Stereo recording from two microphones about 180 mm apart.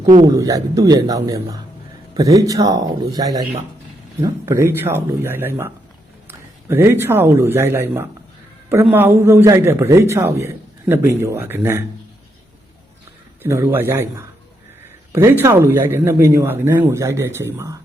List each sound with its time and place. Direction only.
0.0 s a man's voice: 20° right (ahead or behind)
13.4 s a man's voice: 15° right (ahead or behind)